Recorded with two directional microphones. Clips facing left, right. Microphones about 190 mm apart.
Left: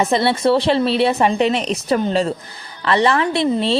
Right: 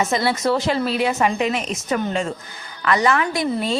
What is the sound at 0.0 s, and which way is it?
A woman's voice, 30° left (ahead or behind).